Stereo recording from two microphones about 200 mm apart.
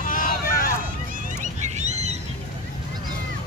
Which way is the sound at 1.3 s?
35° right (ahead or behind).